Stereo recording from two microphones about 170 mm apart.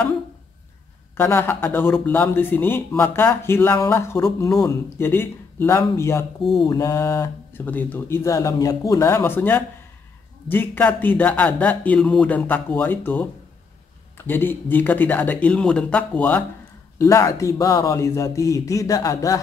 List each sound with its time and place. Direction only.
1.1 s speech: 10° left (ahead or behind)